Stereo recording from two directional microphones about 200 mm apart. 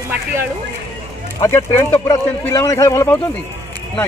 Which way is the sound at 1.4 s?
15° left (ahead or behind).